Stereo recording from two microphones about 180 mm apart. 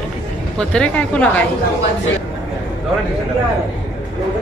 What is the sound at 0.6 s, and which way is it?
Speech, 5° left (ahead or behind).